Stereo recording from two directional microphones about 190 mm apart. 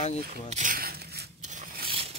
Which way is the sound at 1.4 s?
40° right (ahead or behind).